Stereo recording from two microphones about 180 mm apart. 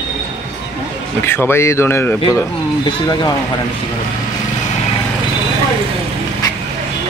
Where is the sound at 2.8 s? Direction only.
25° left (ahead or behind).